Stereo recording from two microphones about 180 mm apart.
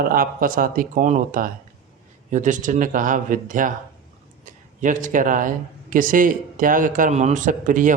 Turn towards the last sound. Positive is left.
turn(degrees=-45)  # may be behind; listen again after turning